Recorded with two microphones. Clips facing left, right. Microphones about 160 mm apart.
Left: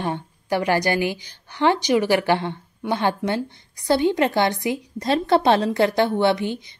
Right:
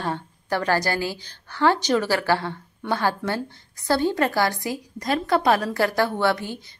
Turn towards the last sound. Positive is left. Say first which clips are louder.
# left 4 dB
turn(degrees=20)  # may be behind; listen again after turning